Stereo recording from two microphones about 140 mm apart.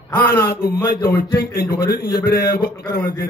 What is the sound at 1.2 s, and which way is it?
A man's voice, 90° left.